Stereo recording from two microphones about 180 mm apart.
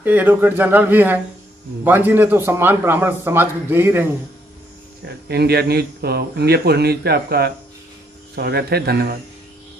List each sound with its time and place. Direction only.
0.0 s a man's voice: 10° right (ahead or behind)
5.0 s speech: 65° right (ahead or behind)